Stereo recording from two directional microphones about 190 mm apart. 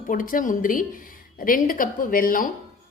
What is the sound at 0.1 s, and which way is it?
A woman's voice, 45° left (ahead or behind).